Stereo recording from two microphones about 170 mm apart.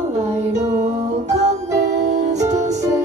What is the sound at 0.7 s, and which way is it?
Music, 45° right (ahead or behind).